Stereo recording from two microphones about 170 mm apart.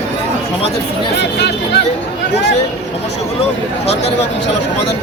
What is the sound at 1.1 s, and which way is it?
Speech, 80° left.